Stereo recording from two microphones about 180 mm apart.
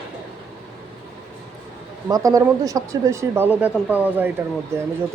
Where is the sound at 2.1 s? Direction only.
20° right (ahead or behind).